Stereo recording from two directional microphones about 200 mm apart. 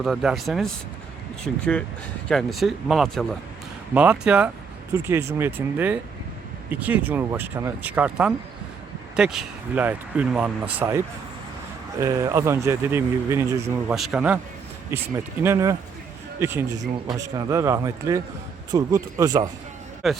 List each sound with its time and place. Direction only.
0.0 s speech: 5° right (ahead or behind)
13.9 s speech: centre (ahead or behind)
15.4 s speech: 15° right (ahead or behind)
20.0 s speech: centre (ahead or behind)